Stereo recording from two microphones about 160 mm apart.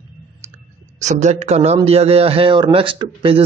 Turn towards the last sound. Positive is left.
turn(degrees=-35)  # may be behind; listen again after turning